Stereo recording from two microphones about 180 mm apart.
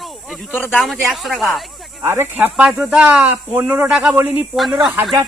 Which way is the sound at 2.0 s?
15° right (ahead or behind).